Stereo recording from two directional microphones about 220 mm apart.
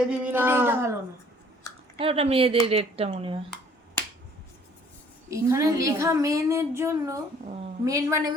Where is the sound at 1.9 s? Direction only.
25° right (ahead or behind).